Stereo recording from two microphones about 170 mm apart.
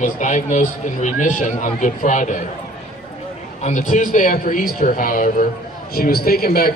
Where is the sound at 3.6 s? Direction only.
45° left (ahead or behind); by 6.7 s 60° left (ahead or behind).